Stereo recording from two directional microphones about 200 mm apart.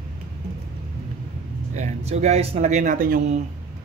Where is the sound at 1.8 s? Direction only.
35° right (ahead or behind).